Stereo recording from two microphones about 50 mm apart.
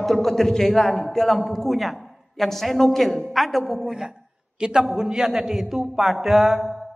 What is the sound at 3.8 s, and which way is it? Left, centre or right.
A man's voice, centre.